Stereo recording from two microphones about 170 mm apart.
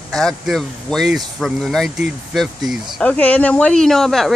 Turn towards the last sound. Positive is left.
turn(degrees=0)  # may be behind; listen again after turning